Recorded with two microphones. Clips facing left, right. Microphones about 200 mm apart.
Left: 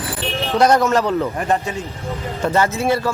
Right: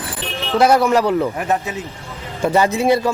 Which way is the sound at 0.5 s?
5° right (ahead or behind).